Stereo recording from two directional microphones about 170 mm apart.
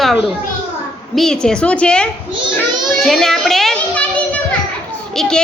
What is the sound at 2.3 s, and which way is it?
Children playing, 30° right (ahead or behind).